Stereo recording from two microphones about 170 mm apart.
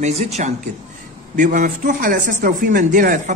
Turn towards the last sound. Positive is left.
turn(degrees=-50)  # may be behind; listen again after turning